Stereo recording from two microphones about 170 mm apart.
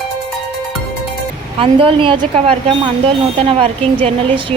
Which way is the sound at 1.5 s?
30° right (ahead or behind).